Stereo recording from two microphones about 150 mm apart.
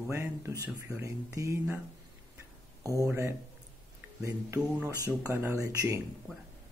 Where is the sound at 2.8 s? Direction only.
20° right (ahead or behind).